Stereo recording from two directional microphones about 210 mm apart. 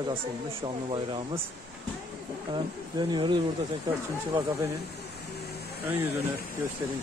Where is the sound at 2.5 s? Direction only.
20° right (ahead or behind).